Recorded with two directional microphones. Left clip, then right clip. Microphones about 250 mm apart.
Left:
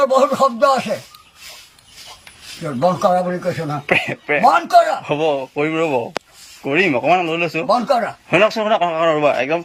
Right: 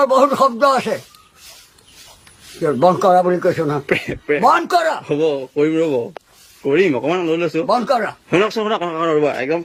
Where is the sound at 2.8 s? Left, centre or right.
Right.